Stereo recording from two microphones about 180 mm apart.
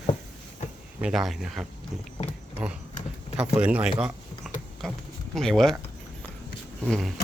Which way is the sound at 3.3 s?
5° right (ahead or behind).